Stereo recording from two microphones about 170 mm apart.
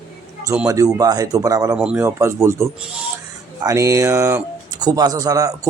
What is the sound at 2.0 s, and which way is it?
Speech, 15° right (ahead or behind).